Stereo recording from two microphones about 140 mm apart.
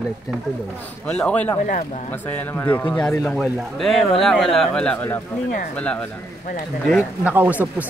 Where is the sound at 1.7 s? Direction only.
65° left (ahead or behind).